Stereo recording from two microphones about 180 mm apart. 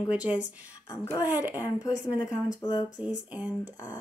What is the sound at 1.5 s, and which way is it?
Speech, 20° left (ahead or behind).